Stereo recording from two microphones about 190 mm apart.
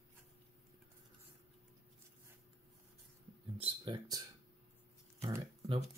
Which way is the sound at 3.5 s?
25° right (ahead or behind).